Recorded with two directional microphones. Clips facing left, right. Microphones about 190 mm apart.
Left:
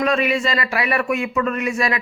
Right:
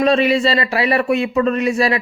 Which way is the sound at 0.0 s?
30° right (ahead or behind).